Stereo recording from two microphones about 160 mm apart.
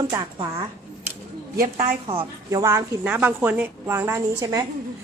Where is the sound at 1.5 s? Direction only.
55° right (ahead or behind).